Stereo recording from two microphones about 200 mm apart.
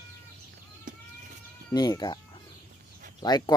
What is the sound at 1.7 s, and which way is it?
Speech, 20° left (ahead or behind).